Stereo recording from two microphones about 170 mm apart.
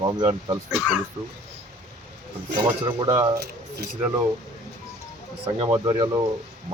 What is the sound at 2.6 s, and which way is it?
Speech, 25° right (ahead or behind).